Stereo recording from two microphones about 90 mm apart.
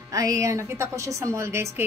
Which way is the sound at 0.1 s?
40° right (ahead or behind).